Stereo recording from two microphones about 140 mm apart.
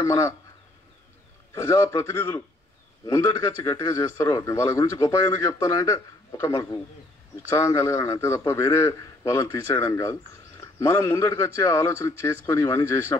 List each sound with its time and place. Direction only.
0.0 s a man's voice: 20° left (ahead or behind)
1.5 s a man's voice: 20° left (ahead or behind)